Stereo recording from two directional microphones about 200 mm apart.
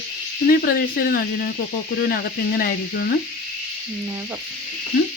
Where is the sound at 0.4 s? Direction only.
45° left (ahead or behind).